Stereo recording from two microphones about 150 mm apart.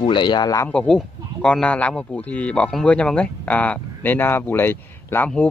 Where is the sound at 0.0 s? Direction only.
35° left (ahead or behind).